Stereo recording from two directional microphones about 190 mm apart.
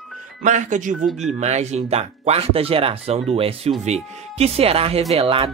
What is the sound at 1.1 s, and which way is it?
Speech, centre (ahead or behind).